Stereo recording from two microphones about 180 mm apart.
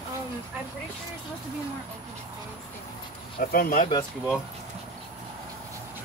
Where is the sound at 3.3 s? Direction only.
50° left (ahead or behind).